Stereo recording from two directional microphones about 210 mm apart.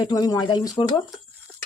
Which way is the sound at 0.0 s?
20° left (ahead or behind).